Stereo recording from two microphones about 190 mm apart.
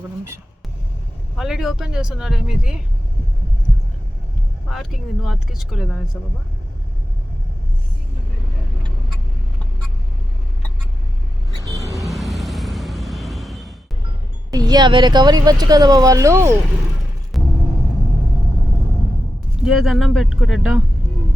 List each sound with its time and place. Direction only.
1.4 s speech: 5° right (ahead or behind)
4.7 s speech: centre (ahead or behind)
11.5 s vehicle: 20° right (ahead or behind)
11.9 s vehicle: centre (ahead or behind)
14.5 s speech: 20° right (ahead or behind)
17.3 s vehicle: centre (ahead or behind)
19.6 s speech: centre (ahead or behind)